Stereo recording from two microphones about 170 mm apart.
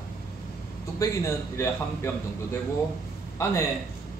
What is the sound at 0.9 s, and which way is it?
A man's voice, 20° left (ahead or behind).